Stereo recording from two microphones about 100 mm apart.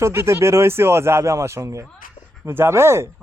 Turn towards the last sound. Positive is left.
turn(degrees=-25)  # may be behind; listen again after turning